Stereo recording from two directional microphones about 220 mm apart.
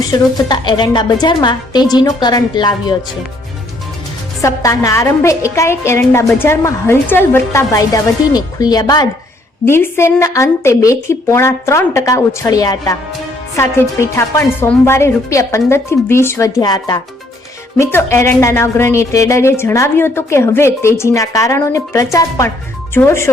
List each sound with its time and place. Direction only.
0.1 s a woman's voice: 20° left (ahead or behind)
4.4 s speech: 15° left (ahead or behind)